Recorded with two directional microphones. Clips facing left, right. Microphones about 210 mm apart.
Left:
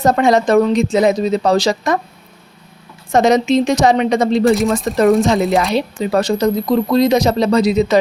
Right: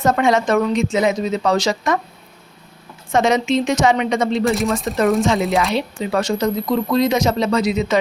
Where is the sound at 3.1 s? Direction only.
40° left (ahead or behind).